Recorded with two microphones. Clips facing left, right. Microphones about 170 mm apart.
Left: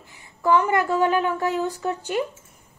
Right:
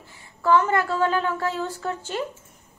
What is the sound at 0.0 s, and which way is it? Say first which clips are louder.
A woman's voice: left 1 dB; 15° left (ahead or behind).